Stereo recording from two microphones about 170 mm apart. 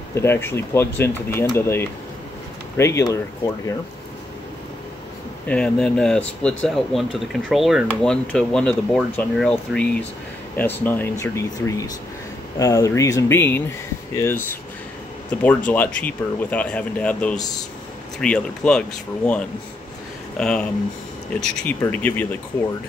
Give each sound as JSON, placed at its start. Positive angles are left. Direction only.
{"t": 0.1, "sound": "speech", "side_deg": 15}
{"t": 5.5, "sound": "speech", "side_deg": 5}
{"t": 17.4, "sound": "speech", "side_deg": 20}
{"t": 18.2, "sound": "speech", "side_deg": 5}
{"t": 21.6, "sound": "speech", "side_deg": 10}